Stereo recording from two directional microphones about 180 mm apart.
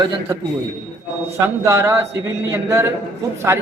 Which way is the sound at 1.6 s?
15° right (ahead or behind).